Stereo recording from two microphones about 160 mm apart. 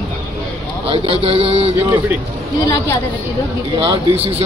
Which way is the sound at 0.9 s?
35° right (ahead or behind).